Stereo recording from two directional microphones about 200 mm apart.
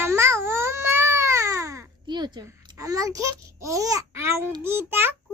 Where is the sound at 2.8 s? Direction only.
15° right (ahead or behind).